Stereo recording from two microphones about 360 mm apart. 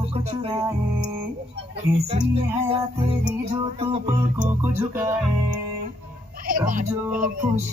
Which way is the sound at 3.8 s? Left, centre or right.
Centre.